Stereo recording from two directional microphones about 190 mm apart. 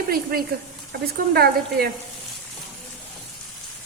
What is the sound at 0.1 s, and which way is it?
A woman's voice, 50° right (ahead or behind).